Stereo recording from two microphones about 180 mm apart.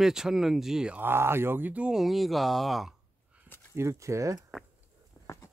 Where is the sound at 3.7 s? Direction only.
15° right (ahead or behind).